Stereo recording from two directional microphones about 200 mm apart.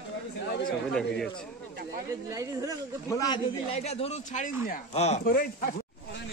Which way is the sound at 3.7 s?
30° left (ahead or behind).